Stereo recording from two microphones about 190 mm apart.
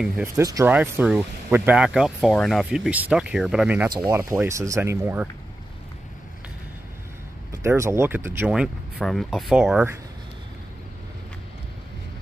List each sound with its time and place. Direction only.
0.0 s speech: 15° right (ahead or behind)
7.6 s speech: 15° right (ahead or behind)